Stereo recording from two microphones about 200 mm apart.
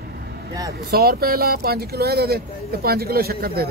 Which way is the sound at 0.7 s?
50° right (ahead or behind).